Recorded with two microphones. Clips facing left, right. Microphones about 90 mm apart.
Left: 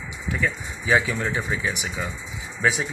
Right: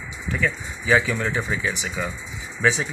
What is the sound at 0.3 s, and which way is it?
Speech, 20° left (ahead or behind).